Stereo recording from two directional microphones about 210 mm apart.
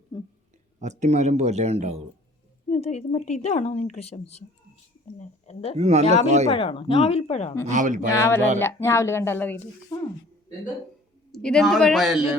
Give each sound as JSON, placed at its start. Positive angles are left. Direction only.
{"t": 0.1, "sound": "speech", "side_deg": 20}
{"t": 0.8, "sound": "speech", "side_deg": -35}
{"t": 2.7, "sound": "speech", "side_deg": 30}
{"t": 5.7, "sound": "speech", "side_deg": -30}
{"t": 6.5, "sound": "a woman's voice", "side_deg": 25}
{"t": 7.7, "sound": "speech", "side_deg": -35}
{"t": 8.1, "sound": "speech", "side_deg": 10}
{"t": 11.3, "sound": "a man's voice", "side_deg": 0}